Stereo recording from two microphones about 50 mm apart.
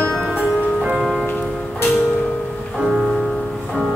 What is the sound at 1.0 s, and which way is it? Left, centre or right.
Music, centre.